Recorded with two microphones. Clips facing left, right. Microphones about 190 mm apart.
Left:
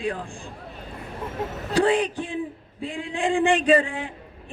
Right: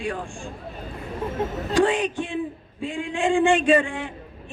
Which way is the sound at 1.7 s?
35° left (ahead or behind).